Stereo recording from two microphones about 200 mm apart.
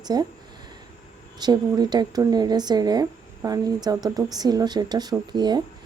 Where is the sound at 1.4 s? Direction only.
20° right (ahead or behind).